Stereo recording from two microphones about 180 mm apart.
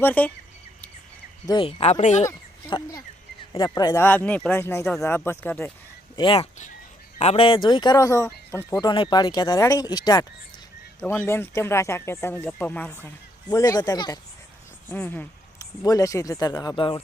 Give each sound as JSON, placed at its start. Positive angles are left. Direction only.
{"t": 0.0, "sound": "speech", "side_deg": 10}
{"t": 1.5, "sound": "speech", "side_deg": 30}
{"t": 2.6, "sound": "speech", "side_deg": 25}
{"t": 6.1, "sound": "speech", "side_deg": 30}
{"t": 13.5, "sound": "speech", "side_deg": 20}
{"t": 14.8, "sound": "speech", "side_deg": 10}